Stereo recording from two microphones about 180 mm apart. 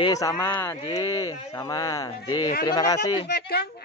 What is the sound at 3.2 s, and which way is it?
Speech, 65° left (ahead or behind).